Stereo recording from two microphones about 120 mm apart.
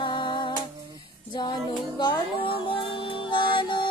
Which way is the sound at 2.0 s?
40° left (ahead or behind).